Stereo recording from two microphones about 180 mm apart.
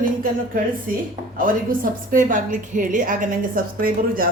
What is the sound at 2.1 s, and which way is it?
A woman's voice, 50° right (ahead or behind).